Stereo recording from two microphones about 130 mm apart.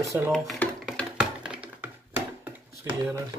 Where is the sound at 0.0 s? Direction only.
25° right (ahead or behind).